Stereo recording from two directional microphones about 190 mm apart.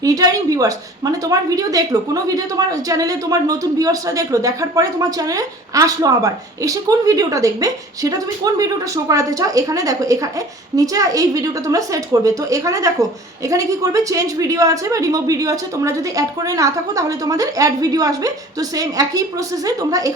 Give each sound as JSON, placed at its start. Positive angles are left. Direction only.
{"t": 0.0, "sound": "a woman's voice", "side_deg": -20}